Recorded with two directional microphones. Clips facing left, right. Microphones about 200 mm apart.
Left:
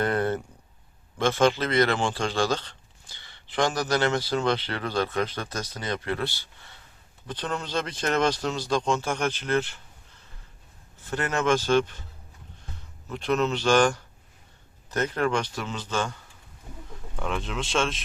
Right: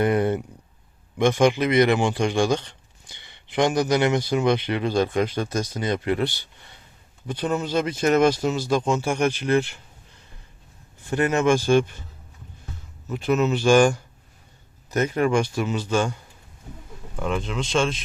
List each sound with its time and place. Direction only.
0.0 s speech: 15° right (ahead or behind)
11.0 s speech: 15° right (ahead or behind)
13.1 s speech: 5° right (ahead or behind)
17.2 s speech: centre (ahead or behind)